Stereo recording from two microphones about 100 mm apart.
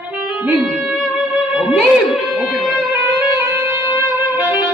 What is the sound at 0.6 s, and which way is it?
Speech, 5° right (ahead or behind).